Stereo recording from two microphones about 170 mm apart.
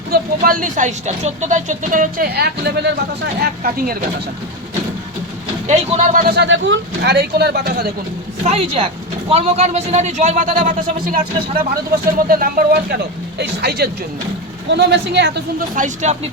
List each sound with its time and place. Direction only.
0.1 s speech: 55° right (ahead or behind); by 2.9 s 75° right (ahead or behind)
5.6 s speech: 45° right (ahead or behind); by 7.9 s 70° right (ahead or behind)
8.4 s speech: 35° right (ahead or behind); by 13.0 s 60° right (ahead or behind)
13.4 s speech: 70° right (ahead or behind)
14.7 s speech: 85° right
15.7 s speech: 45° right (ahead or behind)